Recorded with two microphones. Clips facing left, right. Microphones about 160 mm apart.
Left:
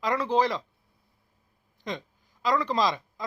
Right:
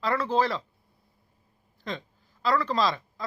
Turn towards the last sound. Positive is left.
turn(degrees=15)  # may be behind; listen again after turning